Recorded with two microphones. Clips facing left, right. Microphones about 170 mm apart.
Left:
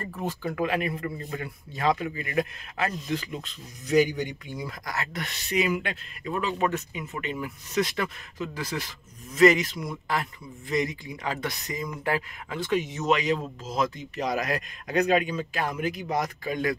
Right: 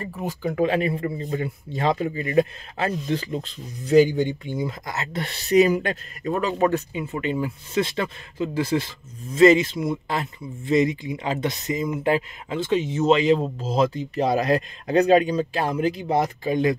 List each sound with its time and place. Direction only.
0.0 s speech: 10° right (ahead or behind)
0.6 s a man's voice: 30° right (ahead or behind)